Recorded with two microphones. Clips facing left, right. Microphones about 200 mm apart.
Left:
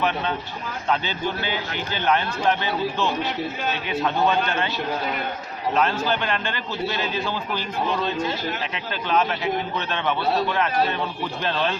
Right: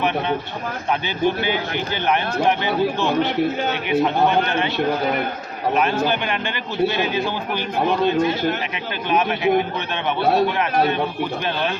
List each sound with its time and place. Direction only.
0.9 s a man's voice: 15° right (ahead or behind)
3.2 s a man's voice: 55° right (ahead or behind)
6.1 s a man's voice: 15° right (ahead or behind)
9.0 s a man's voice: 15° right (ahead or behind)